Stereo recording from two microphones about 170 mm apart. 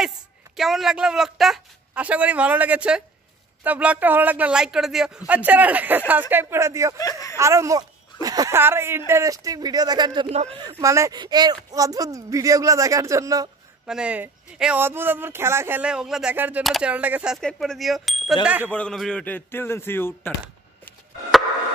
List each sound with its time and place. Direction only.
0.6 s speech: centre (ahead or behind); by 7.0 s 15° right (ahead or behind)
7.0 s speech: 20° left (ahead or behind)
7.3 s speech: 15° right (ahead or behind)
10.3 s speech: 40° right (ahead or behind)
10.8 s speech: 20° right (ahead or behind)
13.8 s speech: 5° right (ahead or behind)
18.7 s a man's voice: 5° left (ahead or behind)